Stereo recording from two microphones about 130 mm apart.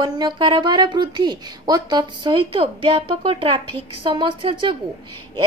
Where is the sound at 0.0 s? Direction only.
35° right (ahead or behind).